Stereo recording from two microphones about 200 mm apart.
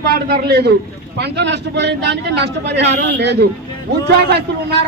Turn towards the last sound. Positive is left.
turn(degrees=-55)  # may be behind; listen again after turning